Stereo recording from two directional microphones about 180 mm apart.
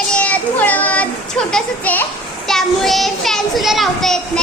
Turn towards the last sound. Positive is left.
turn(degrees=5)  # may be behind; listen again after turning